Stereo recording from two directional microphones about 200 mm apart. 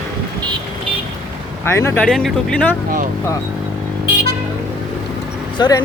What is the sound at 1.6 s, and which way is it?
Speech, 10° left (ahead or behind).